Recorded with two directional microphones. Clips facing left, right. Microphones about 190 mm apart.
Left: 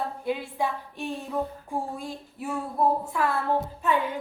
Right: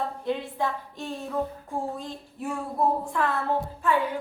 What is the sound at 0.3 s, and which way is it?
A woman's voice, 10° left (ahead or behind).